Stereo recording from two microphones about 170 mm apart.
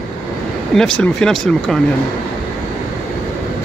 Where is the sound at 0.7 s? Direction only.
5° left (ahead or behind).